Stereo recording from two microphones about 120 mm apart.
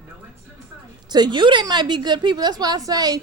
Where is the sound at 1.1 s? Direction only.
40° right (ahead or behind).